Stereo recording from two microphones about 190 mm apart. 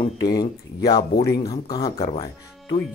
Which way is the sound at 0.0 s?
20° left (ahead or behind).